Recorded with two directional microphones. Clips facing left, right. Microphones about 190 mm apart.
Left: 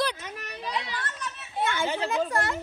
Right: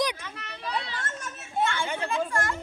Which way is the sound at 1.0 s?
45° right (ahead or behind).